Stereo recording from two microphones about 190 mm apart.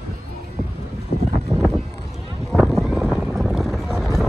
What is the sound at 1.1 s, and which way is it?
Vehicle, 50° left (ahead or behind).